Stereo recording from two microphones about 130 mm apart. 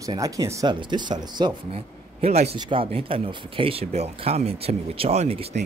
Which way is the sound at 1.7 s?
50° right (ahead or behind).